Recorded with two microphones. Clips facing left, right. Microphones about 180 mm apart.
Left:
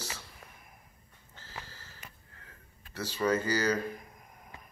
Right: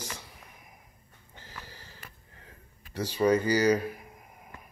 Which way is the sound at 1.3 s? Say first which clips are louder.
Even; 15° right (ahead or behind).